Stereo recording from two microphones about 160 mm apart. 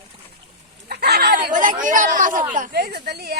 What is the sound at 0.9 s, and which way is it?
Speech, 85° right.